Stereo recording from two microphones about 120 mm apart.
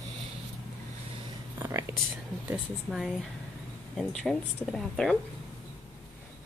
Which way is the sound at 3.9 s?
5° left (ahead or behind).